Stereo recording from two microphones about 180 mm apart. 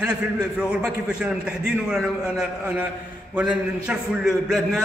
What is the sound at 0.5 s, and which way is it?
A man's voice, 5° right (ahead or behind).